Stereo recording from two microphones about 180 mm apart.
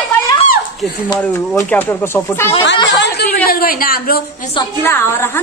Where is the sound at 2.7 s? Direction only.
25° left (ahead or behind).